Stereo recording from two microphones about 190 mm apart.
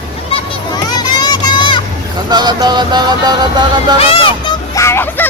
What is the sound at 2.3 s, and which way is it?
Music, 20° right (ahead or behind).